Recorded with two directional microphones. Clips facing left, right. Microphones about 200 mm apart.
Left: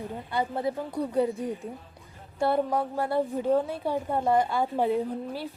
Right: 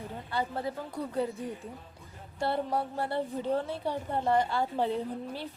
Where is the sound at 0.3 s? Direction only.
15° left (ahead or behind).